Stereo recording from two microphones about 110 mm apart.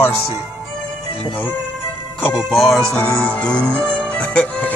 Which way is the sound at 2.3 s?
Centre (ahead or behind).